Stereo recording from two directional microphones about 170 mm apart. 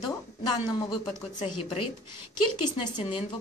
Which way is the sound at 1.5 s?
30° left (ahead or behind).